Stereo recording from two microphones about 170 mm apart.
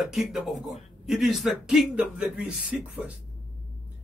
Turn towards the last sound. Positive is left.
turn(degrees=-10)  # may be behind; listen again after turning